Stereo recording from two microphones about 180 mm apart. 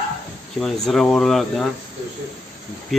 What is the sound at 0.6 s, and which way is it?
Speech, centre (ahead or behind).